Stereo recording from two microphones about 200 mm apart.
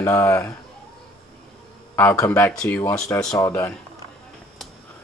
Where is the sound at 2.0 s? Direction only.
10° left (ahead or behind).